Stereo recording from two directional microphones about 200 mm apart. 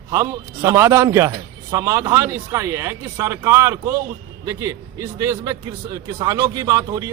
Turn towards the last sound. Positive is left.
turn(degrees=-20)  # may be behind; listen again after turning